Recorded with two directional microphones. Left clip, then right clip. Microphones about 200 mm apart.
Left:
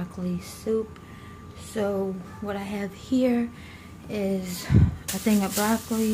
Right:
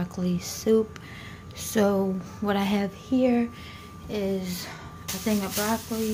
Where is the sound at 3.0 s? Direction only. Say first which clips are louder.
Even; centre (ahead or behind).